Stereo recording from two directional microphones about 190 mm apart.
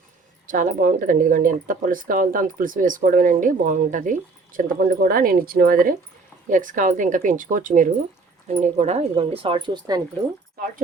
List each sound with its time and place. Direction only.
0.4 s speech: 45° right (ahead or behind); by 10.0 s 20° right (ahead or behind)